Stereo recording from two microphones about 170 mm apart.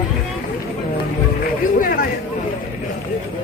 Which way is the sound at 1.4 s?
60° left (ahead or behind).